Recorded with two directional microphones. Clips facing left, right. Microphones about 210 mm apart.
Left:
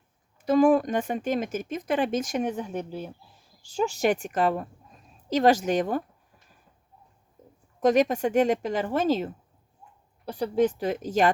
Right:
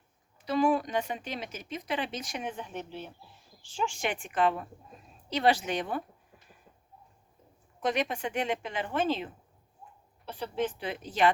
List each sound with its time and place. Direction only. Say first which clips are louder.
0.4 s speech: left 7 dB; 45° left (ahead or behind)
7.8 s speech: left 9 dB; 45° left (ahead or behind)